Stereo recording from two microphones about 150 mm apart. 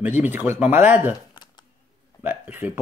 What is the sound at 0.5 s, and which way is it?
Speech, 10° right (ahead or behind).